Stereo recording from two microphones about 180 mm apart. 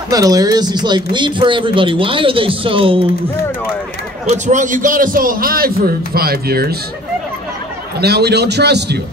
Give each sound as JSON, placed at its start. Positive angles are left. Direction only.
{"t": 0.1, "sound": "speech", "side_deg": -20}
{"t": 4.3, "sound": "a man's voice", "side_deg": -45}
{"t": 8.0, "sound": "a man's voice", "side_deg": -65}